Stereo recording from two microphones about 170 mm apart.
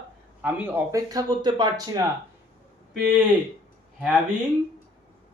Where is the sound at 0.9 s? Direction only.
20° right (ahead or behind).